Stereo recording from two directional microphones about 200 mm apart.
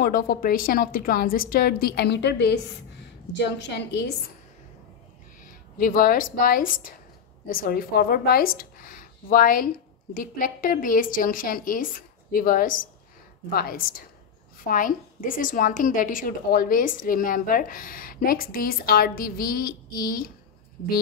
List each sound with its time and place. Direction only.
0.0 s a woman's voice: 45° left (ahead or behind)
5.4 s a woman's voice: 45° left (ahead or behind)